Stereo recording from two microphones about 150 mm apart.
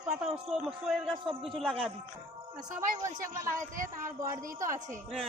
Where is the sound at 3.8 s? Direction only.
60° right (ahead or behind).